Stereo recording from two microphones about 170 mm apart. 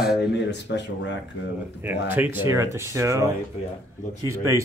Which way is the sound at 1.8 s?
10° right (ahead or behind).